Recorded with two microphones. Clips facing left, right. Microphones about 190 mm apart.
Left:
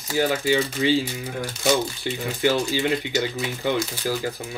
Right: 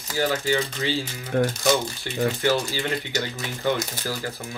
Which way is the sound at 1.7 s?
15° left (ahead or behind).